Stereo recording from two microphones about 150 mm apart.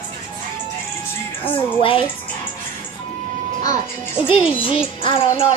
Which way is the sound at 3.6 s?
20° left (ahead or behind).